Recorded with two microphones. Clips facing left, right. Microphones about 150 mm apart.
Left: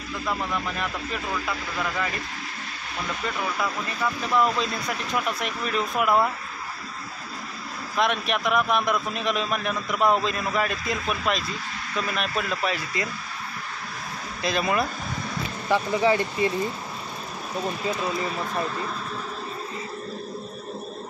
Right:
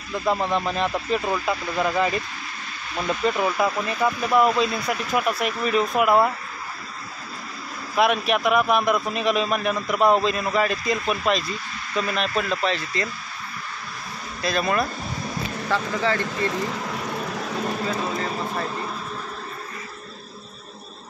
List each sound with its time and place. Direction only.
0.3 s speech: 25° right (ahead or behind)
3.3 s speech: 20° right (ahead or behind); by 6.3 s 5° right (ahead or behind)
7.9 s a man's voice: 5° right (ahead or behind); by 13.1 s 10° left (ahead or behind)
14.4 s speech: 15° left (ahead or behind)
16.4 s a sound: 90° right